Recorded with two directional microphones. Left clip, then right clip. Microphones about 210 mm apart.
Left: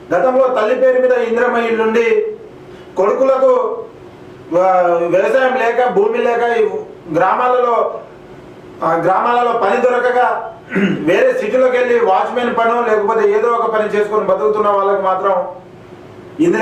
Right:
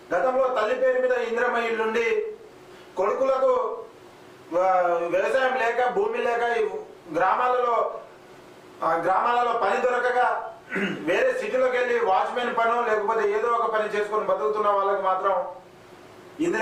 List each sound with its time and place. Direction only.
0.1 s a man's voice: 20° left (ahead or behind)